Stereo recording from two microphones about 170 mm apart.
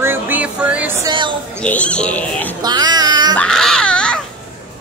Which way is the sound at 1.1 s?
30° right (ahead or behind).